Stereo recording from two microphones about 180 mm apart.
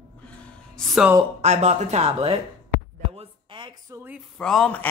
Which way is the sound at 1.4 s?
40° right (ahead or behind).